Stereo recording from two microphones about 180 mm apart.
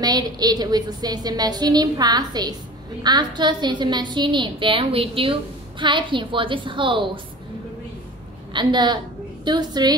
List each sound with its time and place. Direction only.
0.0 s a woman's voice: 20° right (ahead or behind)
8.5 s a woman's voice: 25° right (ahead or behind)